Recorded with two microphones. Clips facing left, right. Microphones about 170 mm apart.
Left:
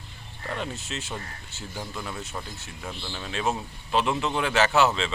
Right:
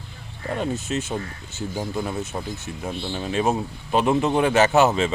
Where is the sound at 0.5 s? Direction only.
40° right (ahead or behind).